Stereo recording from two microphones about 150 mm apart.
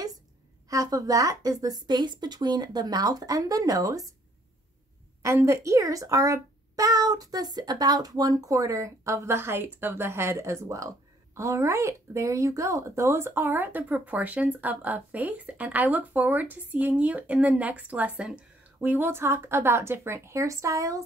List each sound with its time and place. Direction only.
0.7 s speech: 25° right (ahead or behind)
5.2 s speech: 20° right (ahead or behind)